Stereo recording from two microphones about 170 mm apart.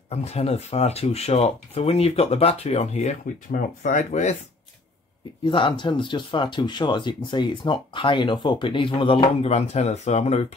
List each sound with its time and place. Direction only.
0.1 s speech: 40° left (ahead or behind)
5.4 s speech: 30° left (ahead or behind)